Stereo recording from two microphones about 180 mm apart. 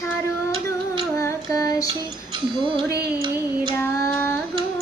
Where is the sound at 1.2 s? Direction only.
15° left (ahead or behind).